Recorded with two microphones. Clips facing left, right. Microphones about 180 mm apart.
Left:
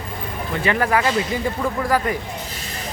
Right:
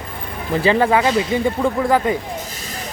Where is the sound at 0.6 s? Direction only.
25° right (ahead or behind).